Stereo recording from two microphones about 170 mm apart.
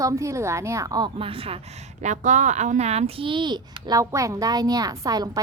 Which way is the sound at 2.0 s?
45° right (ahead or behind).